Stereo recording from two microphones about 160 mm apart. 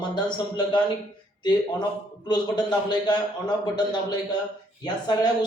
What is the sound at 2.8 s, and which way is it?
Speech, 25° left (ahead or behind).